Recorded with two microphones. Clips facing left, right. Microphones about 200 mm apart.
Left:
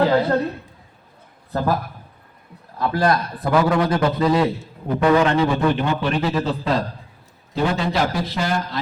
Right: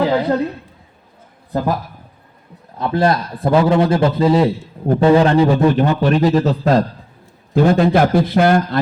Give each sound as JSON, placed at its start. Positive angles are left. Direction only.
{"t": 0.0, "sound": "a man's voice", "side_deg": -15}
{"t": 2.7, "sound": "a man's voice", "side_deg": -25}